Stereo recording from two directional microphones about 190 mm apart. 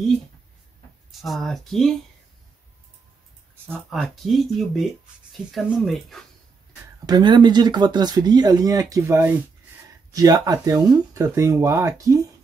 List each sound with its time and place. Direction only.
1.2 s speech: centre (ahead or behind)
3.7 s speech: centre (ahead or behind)
7.1 s speech: 25° right (ahead or behind)